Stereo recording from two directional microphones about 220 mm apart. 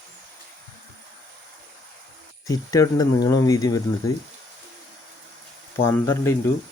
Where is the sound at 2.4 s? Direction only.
15° left (ahead or behind).